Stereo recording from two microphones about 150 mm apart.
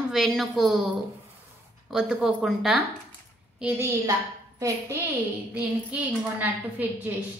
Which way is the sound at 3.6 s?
20° right (ahead or behind).